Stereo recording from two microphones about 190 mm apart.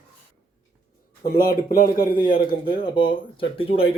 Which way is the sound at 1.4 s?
50° left (ahead or behind).